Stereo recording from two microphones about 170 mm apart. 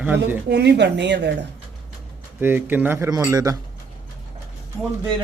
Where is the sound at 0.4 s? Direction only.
75° right (ahead or behind).